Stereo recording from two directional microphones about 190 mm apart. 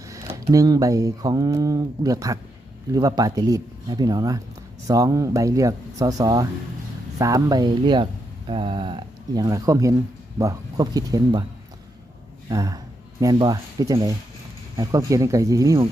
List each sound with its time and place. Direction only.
0.1 s speech: 15° right (ahead or behind)
12.5 s speech: 20° right (ahead or behind)